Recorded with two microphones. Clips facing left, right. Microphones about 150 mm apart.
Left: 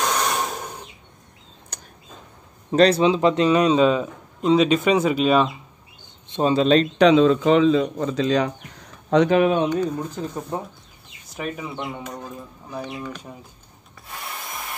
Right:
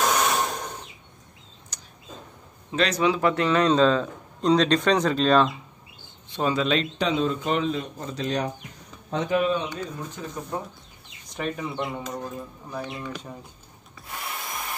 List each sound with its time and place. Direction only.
0.0 s a sound: centre (ahead or behind)
1.7 s a sound: 55° left (ahead or behind)
2.7 s speech: 35° left (ahead or behind)
3.0 s a man's voice: 20° left (ahead or behind)
6.2 s speech: 25° left (ahead or behind)
7.0 s a man's voice: 80° left
9.1 s speech: 75° left (ahead or behind)
10.1 s speech: 25° left (ahead or behind)
11.3 s speech: 5° left (ahead or behind)
14.1 s wood: centre (ahead or behind)